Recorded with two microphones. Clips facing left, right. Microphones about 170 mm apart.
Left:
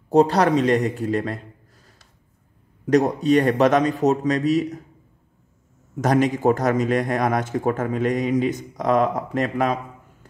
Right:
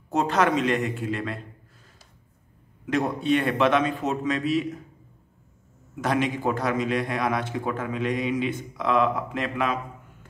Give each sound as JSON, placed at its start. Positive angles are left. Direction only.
{"t": 0.1, "sound": "a man's voice", "side_deg": 35}
{"t": 2.9, "sound": "a man's voice", "side_deg": 40}
{"t": 5.9, "sound": "a man's voice", "side_deg": 40}